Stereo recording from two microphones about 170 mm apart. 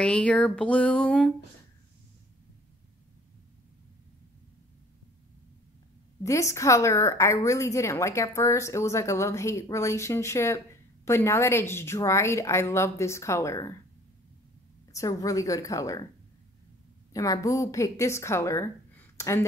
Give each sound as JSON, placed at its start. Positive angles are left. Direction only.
{"t": 0.0, "sound": "a woman's voice", "side_deg": 5}
{"t": 6.2, "sound": "a woman's voice", "side_deg": 20}
{"t": 14.9, "sound": "a woman's voice", "side_deg": 20}
{"t": 17.1, "sound": "a woman's voice", "side_deg": 20}